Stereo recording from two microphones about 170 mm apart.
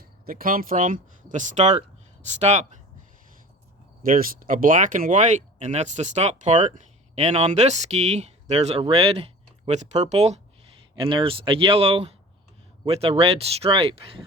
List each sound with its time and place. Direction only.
0.0 s speech: 60° right (ahead or behind); by 2.6 s 40° right (ahead or behind)
4.0 s speech: 55° right (ahead or behind); by 14.2 s 35° right (ahead or behind)